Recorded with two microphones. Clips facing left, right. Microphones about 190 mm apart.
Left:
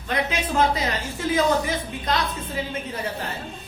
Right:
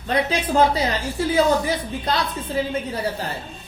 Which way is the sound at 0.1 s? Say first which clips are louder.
Right 4 dB; 35° right (ahead or behind).